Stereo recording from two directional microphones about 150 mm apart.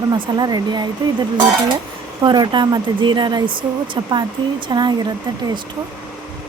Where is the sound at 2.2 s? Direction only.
30° right (ahead or behind).